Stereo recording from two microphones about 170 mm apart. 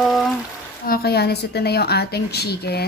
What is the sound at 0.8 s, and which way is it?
Speech, 65° left (ahead or behind).